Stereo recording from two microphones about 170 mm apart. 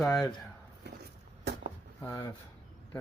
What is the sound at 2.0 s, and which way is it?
Speech, 20° left (ahead or behind).